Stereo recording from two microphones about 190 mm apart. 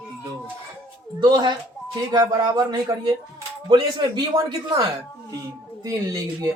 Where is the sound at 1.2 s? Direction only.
20° right (ahead or behind).